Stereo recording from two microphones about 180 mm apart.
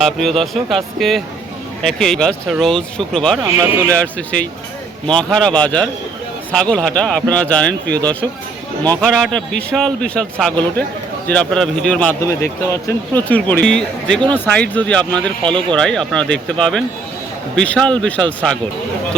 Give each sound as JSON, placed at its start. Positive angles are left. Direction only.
{"t": 0.0, "sound": "speech", "side_deg": 0}
{"t": 3.4, "sound": "speech", "side_deg": -20}
{"t": 3.8, "sound": "speech", "side_deg": 10}